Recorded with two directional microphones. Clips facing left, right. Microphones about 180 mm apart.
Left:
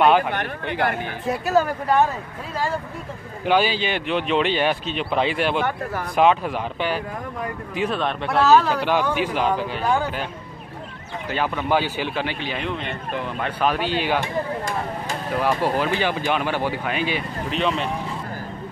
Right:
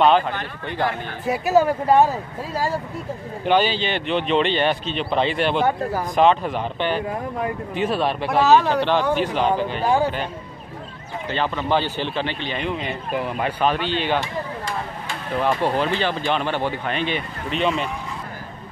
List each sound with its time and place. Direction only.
0.0 s speech: 10° left (ahead or behind)
1.2 s speech: 10° right (ahead or behind); by 2.1 s 30° right (ahead or behind)
3.4 s speech: 5° left (ahead or behind)
5.6 s speech: 30° right (ahead or behind)
6.1 s speech: 5° left (ahead or behind)
8.5 s speech: 20° right (ahead or behind)
9.1 s speech: 5° left (ahead or behind)
11.2 s speech: 10° left (ahead or behind); by 13.5 s 5° right (ahead or behind)
13.6 s speech: 5° left (ahead or behind)
15.3 s speech: 5° left (ahead or behind)